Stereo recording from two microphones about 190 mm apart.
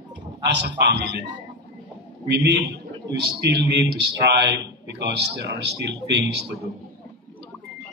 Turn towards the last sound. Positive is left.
turn(degrees=-65)  # may be behind; listen again after turning